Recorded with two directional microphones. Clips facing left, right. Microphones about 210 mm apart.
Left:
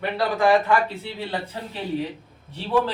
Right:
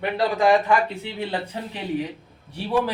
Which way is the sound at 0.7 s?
15° right (ahead or behind).